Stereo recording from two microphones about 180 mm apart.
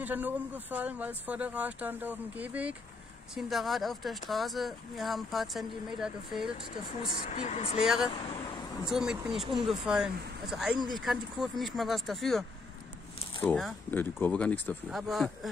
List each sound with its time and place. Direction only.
0.0 s speech: 10° right (ahead or behind)
7.1 s speech: 45° left (ahead or behind)
7.8 s speech: centre (ahead or behind)